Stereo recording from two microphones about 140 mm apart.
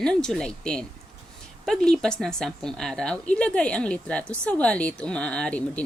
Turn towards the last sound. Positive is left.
turn(degrees=10)  # may be behind; listen again after turning